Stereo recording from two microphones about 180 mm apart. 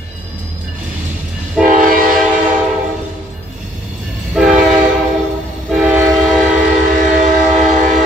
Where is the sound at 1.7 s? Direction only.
50° right (ahead or behind).